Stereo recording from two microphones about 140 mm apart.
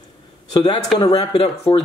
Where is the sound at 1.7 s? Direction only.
40° left (ahead or behind).